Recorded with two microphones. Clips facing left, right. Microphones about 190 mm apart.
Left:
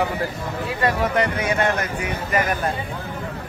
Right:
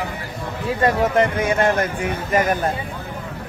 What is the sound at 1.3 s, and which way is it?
A man's voice, 50° right (ahead or behind).